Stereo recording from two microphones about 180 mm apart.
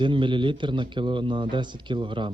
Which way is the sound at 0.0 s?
25° right (ahead or behind).